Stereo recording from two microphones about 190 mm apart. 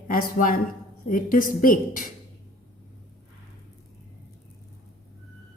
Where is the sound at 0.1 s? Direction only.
45° left (ahead or behind).